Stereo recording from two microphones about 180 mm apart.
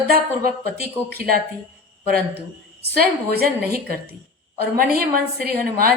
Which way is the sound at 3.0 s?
55° right (ahead or behind).